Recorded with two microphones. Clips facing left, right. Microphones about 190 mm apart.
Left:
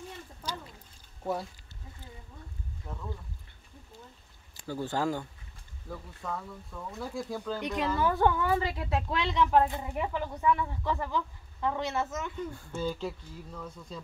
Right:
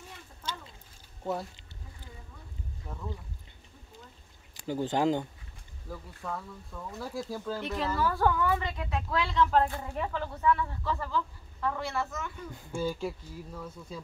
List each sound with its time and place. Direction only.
0.4 s a sound: 25° right (ahead or behind)
2.9 s speech: 5° right (ahead or behind)
4.6 s speech: 15° right (ahead or behind)
5.9 s speech: centre (ahead or behind)
7.5 s a woman's voice: 15° left (ahead or behind)
12.5 s speech: 10° right (ahead or behind)